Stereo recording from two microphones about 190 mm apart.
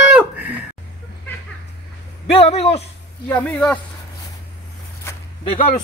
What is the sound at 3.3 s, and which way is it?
Speech, 5° left (ahead or behind).